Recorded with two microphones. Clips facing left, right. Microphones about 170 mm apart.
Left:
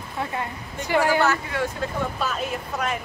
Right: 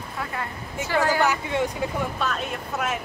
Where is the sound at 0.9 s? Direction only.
15° left (ahead or behind).